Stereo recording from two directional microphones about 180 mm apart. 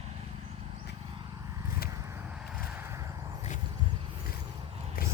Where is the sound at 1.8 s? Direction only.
15° right (ahead or behind).